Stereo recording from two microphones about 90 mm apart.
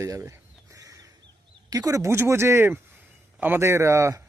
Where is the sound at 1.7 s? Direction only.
40° right (ahead or behind).